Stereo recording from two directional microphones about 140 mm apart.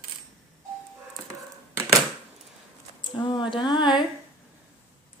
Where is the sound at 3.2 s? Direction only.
35° left (ahead or behind).